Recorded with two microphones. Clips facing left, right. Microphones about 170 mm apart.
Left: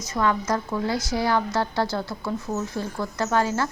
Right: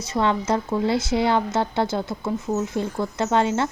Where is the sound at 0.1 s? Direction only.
25° right (ahead or behind).